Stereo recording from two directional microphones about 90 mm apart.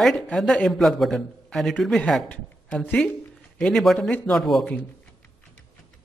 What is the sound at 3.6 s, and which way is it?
A man's voice, centre (ahead or behind).